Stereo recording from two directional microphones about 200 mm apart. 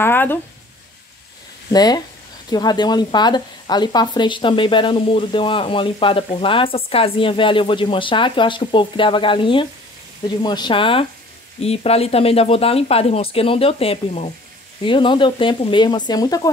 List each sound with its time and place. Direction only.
0.0 s speech: 10° left (ahead or behind)
1.7 s speech: 20° left (ahead or behind)